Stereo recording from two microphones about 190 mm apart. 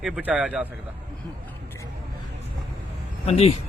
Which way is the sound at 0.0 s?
5° right (ahead or behind).